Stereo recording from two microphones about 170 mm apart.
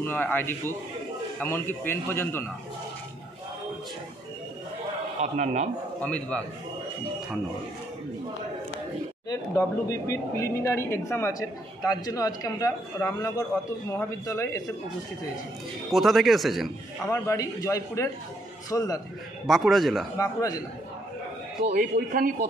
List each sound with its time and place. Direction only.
0.0 s a man's voice: 10° left (ahead or behind)
5.2 s a man's voice: 45° right (ahead or behind)
5.9 s a man's voice: 10° left (ahead or behind)
9.3 s speech: 20° left (ahead or behind)
15.9 s speech: centre (ahead or behind)
17.1 s a man's voice: 20° left (ahead or behind)
19.4 s speech: centre (ahead or behind)
20.2 s speech: 20° left (ahead or behind)
21.7 s a man's voice: 55° right (ahead or behind)